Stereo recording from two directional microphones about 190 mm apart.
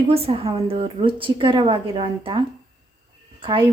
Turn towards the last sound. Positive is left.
turn(degrees=-25)  # may be behind; listen again after turning